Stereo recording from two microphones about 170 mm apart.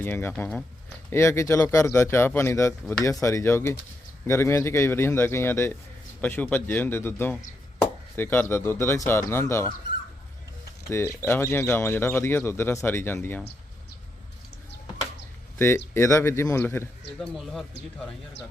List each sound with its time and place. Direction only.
0.0 s speech: 10° left (ahead or behind)
10.8 s speech: 15° left (ahead or behind)
15.5 s speech: 15° left (ahead or behind)
17.2 s speech: centre (ahead or behind)